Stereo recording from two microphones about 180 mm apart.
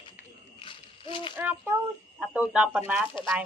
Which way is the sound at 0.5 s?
30° left (ahead or behind).